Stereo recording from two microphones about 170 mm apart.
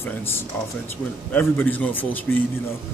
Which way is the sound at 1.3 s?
10° left (ahead or behind).